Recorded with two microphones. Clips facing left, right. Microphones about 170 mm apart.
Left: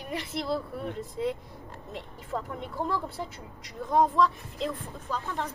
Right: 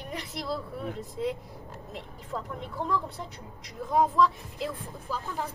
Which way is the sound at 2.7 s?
Centre (ahead or behind).